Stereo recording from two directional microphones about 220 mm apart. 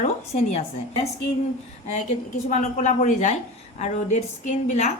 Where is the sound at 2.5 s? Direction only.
35° left (ahead or behind).